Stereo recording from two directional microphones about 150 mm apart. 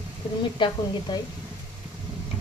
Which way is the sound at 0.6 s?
30° left (ahead or behind).